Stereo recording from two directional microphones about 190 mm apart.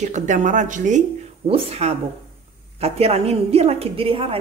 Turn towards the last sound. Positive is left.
turn(degrees=-30)  # may be behind; listen again after turning